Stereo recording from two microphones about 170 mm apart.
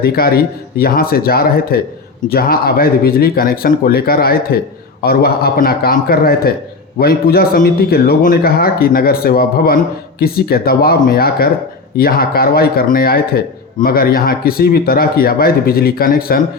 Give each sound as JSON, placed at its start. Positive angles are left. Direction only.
{"t": 0.0, "sound": "speech", "side_deg": 65}